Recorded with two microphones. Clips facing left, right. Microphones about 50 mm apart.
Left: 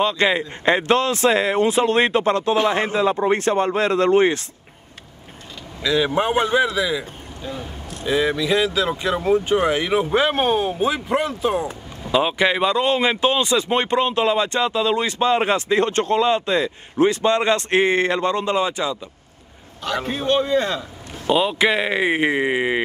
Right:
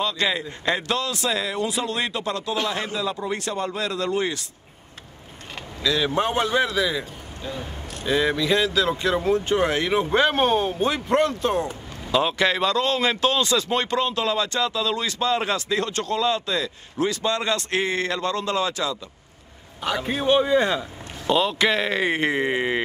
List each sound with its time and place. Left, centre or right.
0.0 s speech: left
5.8 s speech: centre
6.6 s a man's voice: centre
20.1 s speech: centre
21.3 s speech: centre